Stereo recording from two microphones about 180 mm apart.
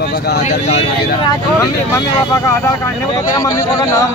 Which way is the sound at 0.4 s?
35° left (ahead or behind).